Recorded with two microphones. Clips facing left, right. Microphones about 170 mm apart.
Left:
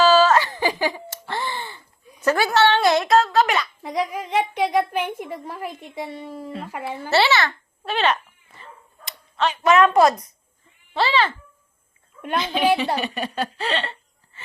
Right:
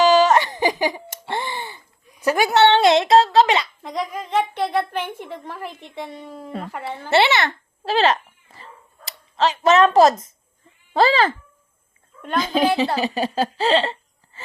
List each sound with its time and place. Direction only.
0.0 s a sound: 15° right (ahead or behind)
1.2 s gasp: 20° right (ahead or behind)
2.2 s a woman's voice: 15° right (ahead or behind)
3.8 s a woman's voice: 10° left (ahead or behind)
7.1 s a woman's voice: 20° right (ahead or behind)
7.9 s goat: 35° right (ahead or behind)
9.3 s a woman's voice: 30° right (ahead or behind)
10.9 s a child's voice: 45° right (ahead or behind)
12.4 s a woman's voice: 40° right (ahead or behind)